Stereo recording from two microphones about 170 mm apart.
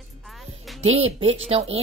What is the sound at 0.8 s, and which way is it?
Speech, 35° right (ahead or behind).